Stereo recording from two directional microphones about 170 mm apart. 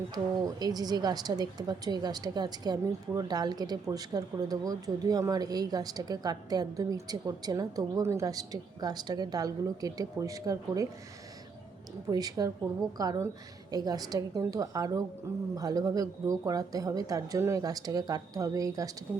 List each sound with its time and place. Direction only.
0.1 s speech: 25° right (ahead or behind)
12.1 s speech: 20° right (ahead or behind)